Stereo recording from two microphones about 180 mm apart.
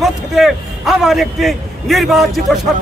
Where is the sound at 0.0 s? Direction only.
Centre (ahead or behind).